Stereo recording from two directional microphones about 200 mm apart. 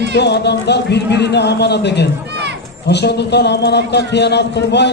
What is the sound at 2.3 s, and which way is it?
Run, 60° right (ahead or behind).